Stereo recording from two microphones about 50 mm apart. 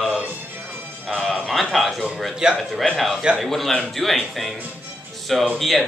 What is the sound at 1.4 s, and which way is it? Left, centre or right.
Speech, centre.